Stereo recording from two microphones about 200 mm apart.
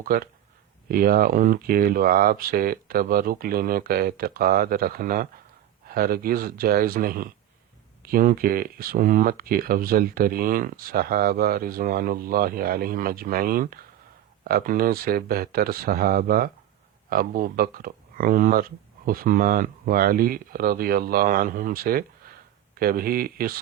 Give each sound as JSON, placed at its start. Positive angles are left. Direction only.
{"t": 0.0, "sound": "speech", "side_deg": -45}